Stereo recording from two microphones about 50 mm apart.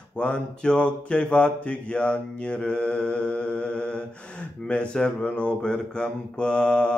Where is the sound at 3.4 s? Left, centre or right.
Left.